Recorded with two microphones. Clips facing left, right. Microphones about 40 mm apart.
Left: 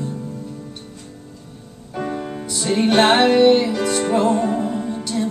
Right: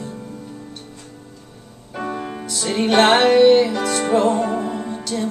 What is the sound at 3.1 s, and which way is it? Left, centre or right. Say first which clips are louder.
Music: right 3 dB; centre.